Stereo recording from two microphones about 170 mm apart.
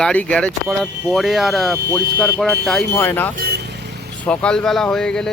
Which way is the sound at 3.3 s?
65° right (ahead or behind).